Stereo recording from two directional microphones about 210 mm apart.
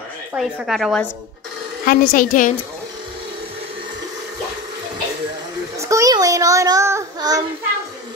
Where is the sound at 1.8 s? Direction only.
40° left (ahead or behind).